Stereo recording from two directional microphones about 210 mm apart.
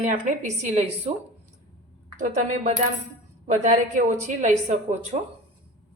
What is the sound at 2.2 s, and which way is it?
A woman's voice, 35° right (ahead or behind).